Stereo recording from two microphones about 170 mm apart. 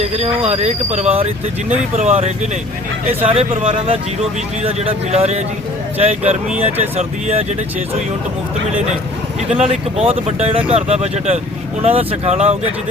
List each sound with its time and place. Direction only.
0.2 s speech: 40° right (ahead or behind)
6.5 s speech: 10° right (ahead or behind)
6.9 s speech: 35° right (ahead or behind)
9.6 s speech: 35° right (ahead or behind)